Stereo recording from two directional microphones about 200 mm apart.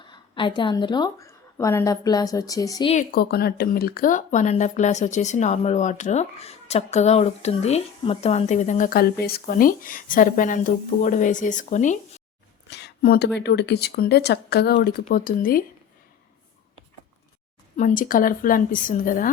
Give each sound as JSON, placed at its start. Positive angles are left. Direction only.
{"t": 0.0, "sound": "a woman's voice", "side_deg": 25}
{"t": 2.9, "sound": "speech", "side_deg": 45}
{"t": 12.7, "sound": "speech", "side_deg": 55}
{"t": 15.1, "sound": "a woman's voice", "side_deg": 45}
{"t": 17.7, "sound": "a woman's voice", "side_deg": 40}